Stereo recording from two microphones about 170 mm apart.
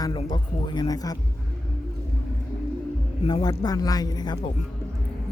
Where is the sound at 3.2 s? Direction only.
25° left (ahead or behind).